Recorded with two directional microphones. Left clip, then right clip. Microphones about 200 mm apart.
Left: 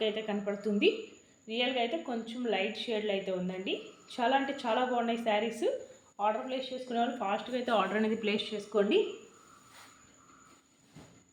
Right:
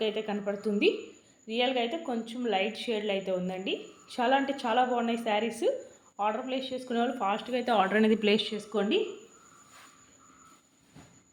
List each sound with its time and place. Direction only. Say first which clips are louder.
0.0 s speech: right 2 dB; 25° right (ahead or behind)
6.1 s speech: right 1 dB; 35° right (ahead or behind)